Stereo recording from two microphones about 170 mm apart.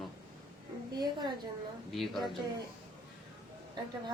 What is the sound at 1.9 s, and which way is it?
Speech, centre (ahead or behind).